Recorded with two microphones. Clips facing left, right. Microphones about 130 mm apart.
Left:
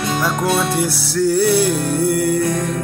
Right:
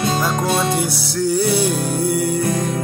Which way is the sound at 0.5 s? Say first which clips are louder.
Left 1 dB; 20° right (ahead or behind).